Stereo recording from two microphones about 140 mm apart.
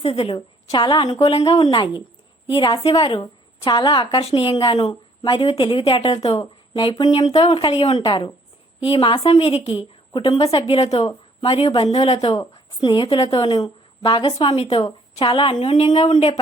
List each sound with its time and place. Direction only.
0.0 s a woman's voice: 45° left (ahead or behind)
0.3 s a woman's voice: 30° left (ahead or behind)
1.2 s a woman's voice: 45° left (ahead or behind)
12.3 s a woman's voice: 30° left (ahead or behind)
13.3 s a woman's voice: 30° left (ahead or behind)